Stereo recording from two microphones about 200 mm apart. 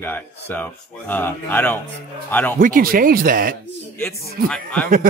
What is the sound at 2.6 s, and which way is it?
Speech, 45° right (ahead or behind).